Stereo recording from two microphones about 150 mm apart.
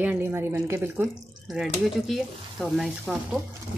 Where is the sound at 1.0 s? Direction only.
Centre (ahead or behind).